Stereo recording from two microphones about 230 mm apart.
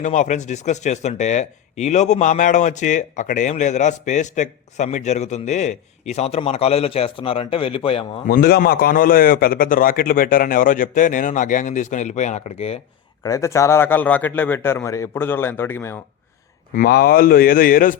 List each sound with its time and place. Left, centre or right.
0.0 s a man's voice: left
8.3 s a man's voice: left
13.2 s a man's voice: centre
16.7 s a man's voice: left